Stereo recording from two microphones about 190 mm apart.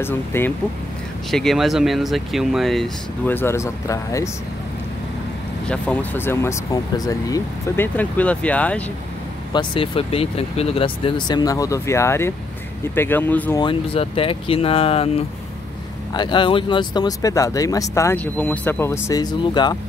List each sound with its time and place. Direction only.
0.0 s speech: 10° left (ahead or behind)
1.3 s speech: centre (ahead or behind)
5.7 s speech: 10° left (ahead or behind)
9.5 s speech: 25° left (ahead or behind); by 13.6 s 10° left (ahead or behind)
13.6 s speech: 25° left (ahead or behind)